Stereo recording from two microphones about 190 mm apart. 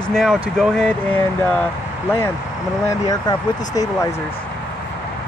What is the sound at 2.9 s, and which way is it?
Speech, 20° left (ahead or behind).